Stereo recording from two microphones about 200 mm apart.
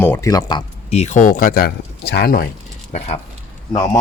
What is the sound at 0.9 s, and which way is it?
Speech, 35° left (ahead or behind).